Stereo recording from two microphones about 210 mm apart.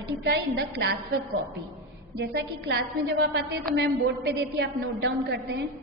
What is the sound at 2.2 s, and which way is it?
A woman's voice, 55° right (ahead or behind).